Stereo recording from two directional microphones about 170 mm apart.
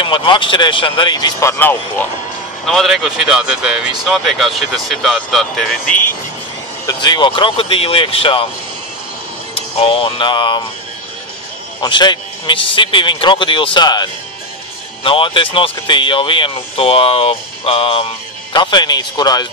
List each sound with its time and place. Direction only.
0.0 s a man's voice: 30° left (ahead or behind); by 6.1 s 10° left (ahead or behind)
6.9 s speech: 25° left (ahead or behind)
9.8 s speech: 35° left (ahead or behind)
11.8 s a man's voice: 25° left (ahead or behind)
15.0 s a man's voice: 30° left (ahead or behind)